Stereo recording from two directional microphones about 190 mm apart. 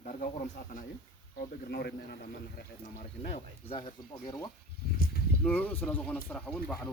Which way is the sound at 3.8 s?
25° left (ahead or behind).